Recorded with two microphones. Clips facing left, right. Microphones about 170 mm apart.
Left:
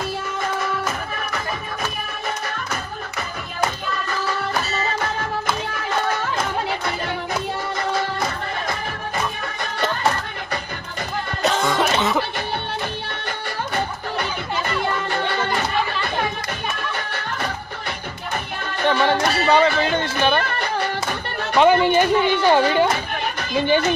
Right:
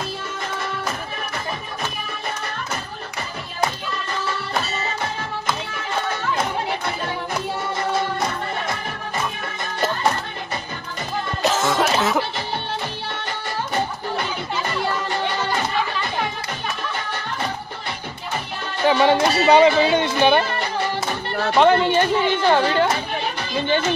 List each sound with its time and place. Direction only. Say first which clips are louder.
11.4 s music: even; centre (ahead or behind)
18.9 s music: right 4 dB; 20° right (ahead or behind)
21.5 s speech: left 1 dB; 10° left (ahead or behind)